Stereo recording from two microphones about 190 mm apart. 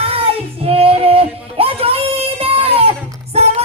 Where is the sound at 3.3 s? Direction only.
35° right (ahead or behind).